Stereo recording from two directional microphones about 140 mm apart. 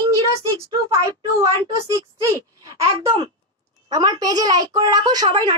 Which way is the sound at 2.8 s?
25° right (ahead or behind).